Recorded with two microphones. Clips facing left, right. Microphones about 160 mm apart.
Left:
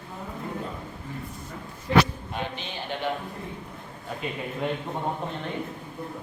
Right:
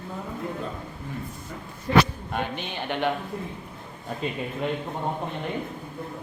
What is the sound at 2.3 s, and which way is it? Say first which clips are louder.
Speech: right 3 dB; 60° right (ahead or behind).